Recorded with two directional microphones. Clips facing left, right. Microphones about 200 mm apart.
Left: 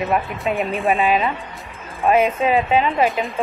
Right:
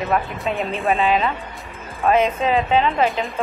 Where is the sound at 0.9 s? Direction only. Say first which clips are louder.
Right 1 dB; 15° left (ahead or behind).